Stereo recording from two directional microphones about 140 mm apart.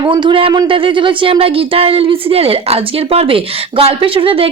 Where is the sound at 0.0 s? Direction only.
35° right (ahead or behind).